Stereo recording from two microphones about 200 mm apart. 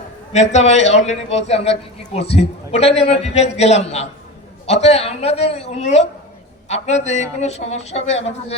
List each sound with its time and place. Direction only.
0.3 s a man's voice: 35° left (ahead or behind)